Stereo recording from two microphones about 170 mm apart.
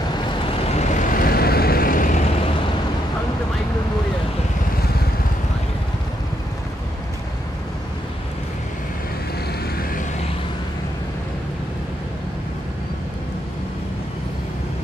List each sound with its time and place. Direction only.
0.7 s vehicle: 45° left (ahead or behind)